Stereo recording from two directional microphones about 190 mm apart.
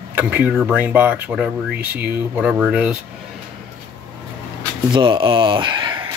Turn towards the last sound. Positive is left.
turn(degrees=-25)  # may be behind; listen again after turning